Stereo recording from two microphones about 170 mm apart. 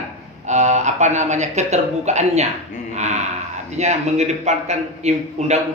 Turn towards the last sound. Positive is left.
turn(degrees=-40)  # may be behind; listen again after turning